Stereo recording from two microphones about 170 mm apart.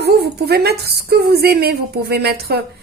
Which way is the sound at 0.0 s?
70° right (ahead or behind).